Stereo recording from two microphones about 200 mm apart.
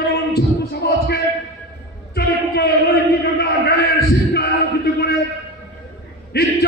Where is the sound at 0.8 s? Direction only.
50° left (ahead or behind).